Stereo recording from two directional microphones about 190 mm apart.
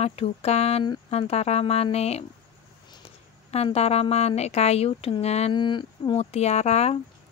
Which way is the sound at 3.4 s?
35° left (ahead or behind).